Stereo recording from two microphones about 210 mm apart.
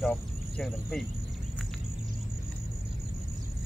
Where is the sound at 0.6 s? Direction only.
Centre (ahead or behind).